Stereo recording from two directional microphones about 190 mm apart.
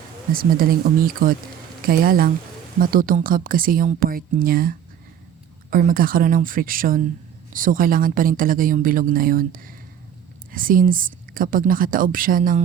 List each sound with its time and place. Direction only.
0.3 s speech: 50° right (ahead or behind)